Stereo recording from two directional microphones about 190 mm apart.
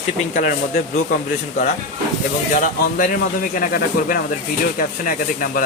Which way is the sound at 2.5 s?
45° left (ahead or behind).